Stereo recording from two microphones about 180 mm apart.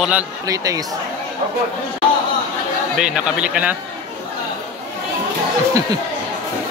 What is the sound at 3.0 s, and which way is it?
Speech, 5° right (ahead or behind).